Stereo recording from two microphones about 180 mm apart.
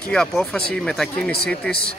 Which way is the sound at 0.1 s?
5° left (ahead or behind).